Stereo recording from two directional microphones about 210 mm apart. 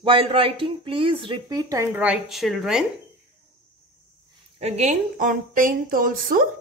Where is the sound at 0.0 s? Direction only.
25° right (ahead or behind); by 2.8 s centre (ahead or behind).